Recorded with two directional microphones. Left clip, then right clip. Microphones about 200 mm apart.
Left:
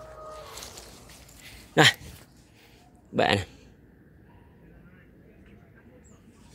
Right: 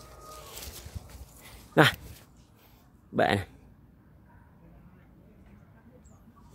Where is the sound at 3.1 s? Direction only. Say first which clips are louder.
Left 2 dB; 15° right (ahead or behind).